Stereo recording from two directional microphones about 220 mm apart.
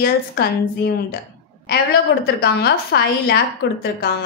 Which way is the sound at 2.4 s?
50° left (ahead or behind).